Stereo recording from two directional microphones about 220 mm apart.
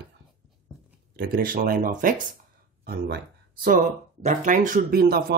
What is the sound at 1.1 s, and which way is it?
Speech, 40° right (ahead or behind).